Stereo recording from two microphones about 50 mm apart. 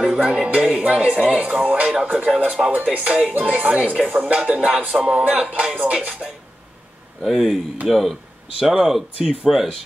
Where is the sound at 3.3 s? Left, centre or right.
Right.